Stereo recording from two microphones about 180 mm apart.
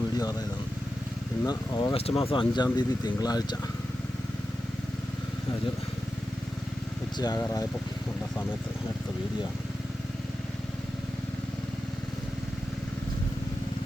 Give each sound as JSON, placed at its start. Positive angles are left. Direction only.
{"t": 1.5, "sound": "speech", "side_deg": 25}
{"t": 7.2, "sound": "speech", "side_deg": 20}